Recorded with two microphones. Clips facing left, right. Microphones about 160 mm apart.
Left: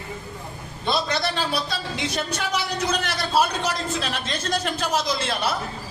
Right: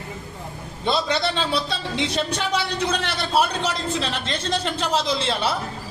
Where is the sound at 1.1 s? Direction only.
25° right (ahead or behind).